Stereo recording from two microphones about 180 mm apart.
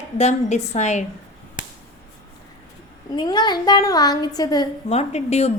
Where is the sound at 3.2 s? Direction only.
25° left (ahead or behind).